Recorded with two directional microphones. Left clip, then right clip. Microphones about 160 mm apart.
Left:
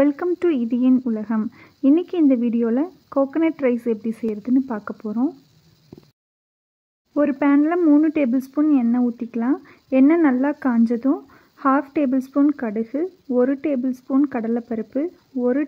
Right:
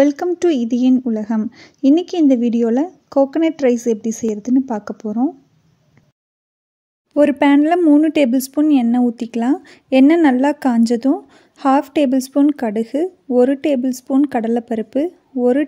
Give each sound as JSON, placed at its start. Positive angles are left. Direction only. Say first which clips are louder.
{"t": 0.0, "sound": "speech", "louder": "right 4 dB", "side_deg": -25}
{"t": 7.2, "sound": "speech", "louder": "right 5 dB", "side_deg": -40}